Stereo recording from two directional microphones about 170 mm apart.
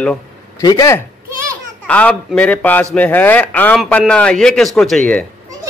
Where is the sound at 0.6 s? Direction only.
20° left (ahead or behind).